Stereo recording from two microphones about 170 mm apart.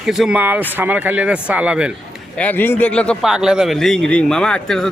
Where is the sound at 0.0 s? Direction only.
Centre (ahead or behind).